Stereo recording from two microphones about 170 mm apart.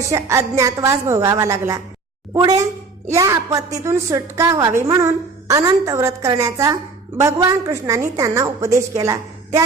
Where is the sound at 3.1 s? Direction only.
20° right (ahead or behind).